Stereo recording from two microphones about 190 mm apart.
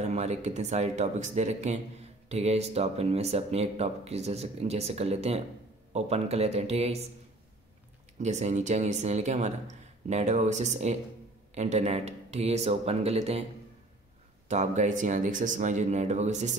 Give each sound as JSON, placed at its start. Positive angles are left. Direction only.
{"t": 0.0, "sound": "speech", "side_deg": -35}
{"t": 8.2, "sound": "speech", "side_deg": -35}
{"t": 14.5, "sound": "speech", "side_deg": -40}